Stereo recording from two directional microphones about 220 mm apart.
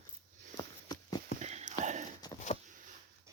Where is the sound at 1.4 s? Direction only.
30° right (ahead or behind).